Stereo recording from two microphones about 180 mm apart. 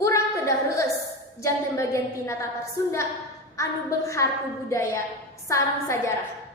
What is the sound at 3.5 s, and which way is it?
A woman's voice, 15° left (ahead or behind).